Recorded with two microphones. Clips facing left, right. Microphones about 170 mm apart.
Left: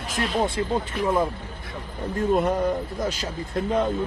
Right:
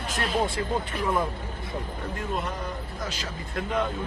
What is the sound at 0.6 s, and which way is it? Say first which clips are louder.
Speech: left 3 dB; 25° left (ahead or behind).